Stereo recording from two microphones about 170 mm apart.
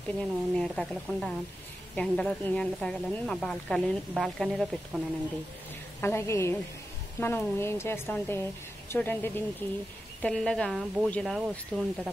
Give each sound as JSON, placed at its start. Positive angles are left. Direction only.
{"t": 0.2, "sound": "speech", "side_deg": 5}
{"t": 5.9, "sound": "a woman's voice", "side_deg": 15}